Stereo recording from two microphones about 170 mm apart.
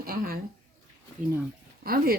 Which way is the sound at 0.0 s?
60° right (ahead or behind).